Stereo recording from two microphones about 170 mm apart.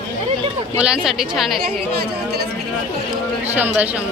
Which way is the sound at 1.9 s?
65° right (ahead or behind).